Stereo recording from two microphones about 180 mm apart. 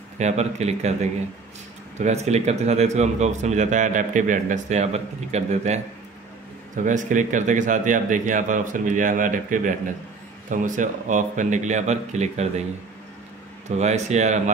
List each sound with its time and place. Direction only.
0.2 s a man's voice: 40° right (ahead or behind)
2.0 s a man's voice: 40° right (ahead or behind)
13.7 s a man's voice: 40° right (ahead or behind)